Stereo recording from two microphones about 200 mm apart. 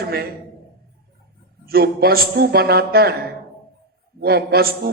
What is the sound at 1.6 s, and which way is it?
A man's voice, 50° right (ahead or behind).